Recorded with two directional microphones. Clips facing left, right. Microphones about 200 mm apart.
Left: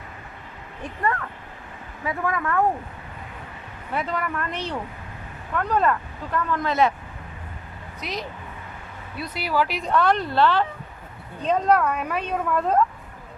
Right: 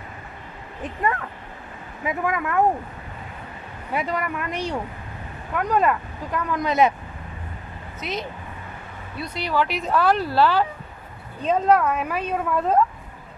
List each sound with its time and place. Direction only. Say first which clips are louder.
0.8 s speech: right 1 dB; 20° right (ahead or behind)
3.9 s speech: right 1 dB; 10° right (ahead or behind)
8.0 s speech: right 2 dB; centre (ahead or behind)